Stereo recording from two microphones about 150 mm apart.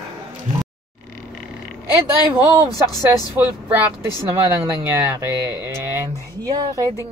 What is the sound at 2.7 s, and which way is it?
Speech, 25° left (ahead or behind).